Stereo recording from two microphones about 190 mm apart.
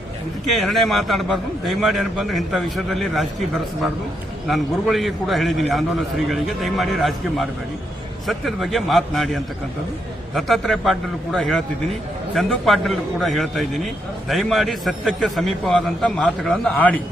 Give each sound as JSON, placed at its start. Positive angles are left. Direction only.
{"t": 0.5, "sound": "a man's voice", "side_deg": 0}